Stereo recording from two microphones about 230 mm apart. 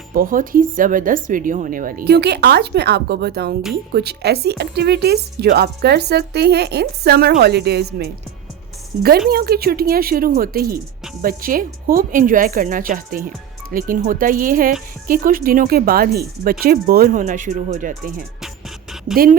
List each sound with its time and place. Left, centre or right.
0.1 s speech: right
9.3 s speech: right